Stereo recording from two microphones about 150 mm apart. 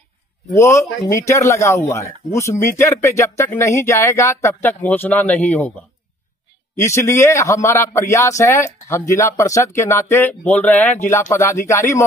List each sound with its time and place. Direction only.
0.5 s a man's voice: 20° left (ahead or behind)
6.8 s a man's voice: 20° left (ahead or behind)